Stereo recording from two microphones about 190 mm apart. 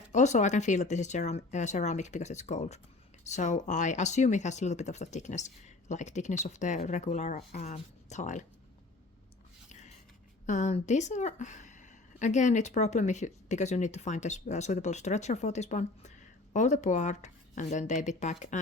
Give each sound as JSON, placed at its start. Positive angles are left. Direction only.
{"t": 0.1, "sound": "speech", "side_deg": 40}
{"t": 9.6, "sound": "a sound", "side_deg": 40}
{"t": 10.4, "sound": "speech", "side_deg": 40}